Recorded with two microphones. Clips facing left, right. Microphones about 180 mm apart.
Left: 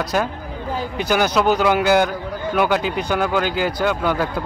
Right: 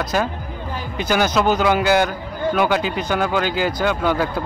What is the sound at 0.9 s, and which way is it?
Speech, 10° left (ahead or behind).